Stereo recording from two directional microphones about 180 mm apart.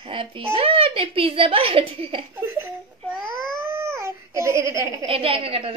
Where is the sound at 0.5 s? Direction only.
30° right (ahead or behind).